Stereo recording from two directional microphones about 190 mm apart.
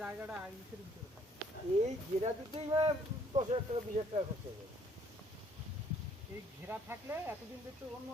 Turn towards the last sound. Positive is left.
turn(degrees=-10)  # may be behind; listen again after turning